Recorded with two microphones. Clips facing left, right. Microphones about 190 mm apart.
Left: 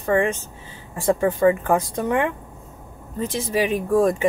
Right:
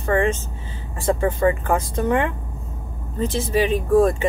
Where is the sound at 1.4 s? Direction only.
15° left (ahead or behind).